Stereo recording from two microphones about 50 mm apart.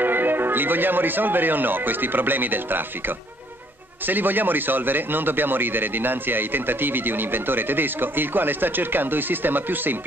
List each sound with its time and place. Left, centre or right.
0.0 s a man's voice: right